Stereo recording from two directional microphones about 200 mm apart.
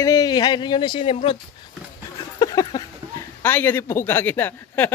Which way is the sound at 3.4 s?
10° left (ahead or behind).